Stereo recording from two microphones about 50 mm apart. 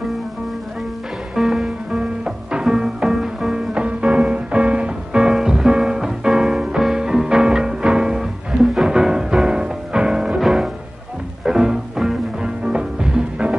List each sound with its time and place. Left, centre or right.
1.3 s music: centre
2.0 s music: centre
3.7 s music: right